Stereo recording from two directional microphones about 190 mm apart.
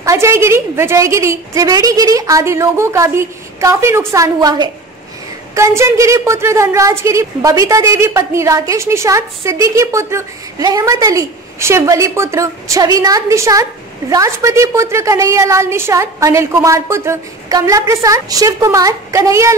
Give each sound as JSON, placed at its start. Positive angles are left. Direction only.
{"t": 0.0, "sound": "a woman's voice", "side_deg": -15}